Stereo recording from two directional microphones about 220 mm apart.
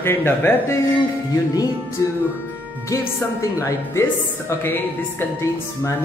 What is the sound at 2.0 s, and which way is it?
Speech, 15° left (ahead or behind).